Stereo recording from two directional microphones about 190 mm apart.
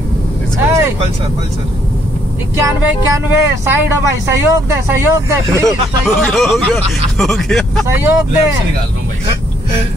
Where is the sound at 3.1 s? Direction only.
15° right (ahead or behind).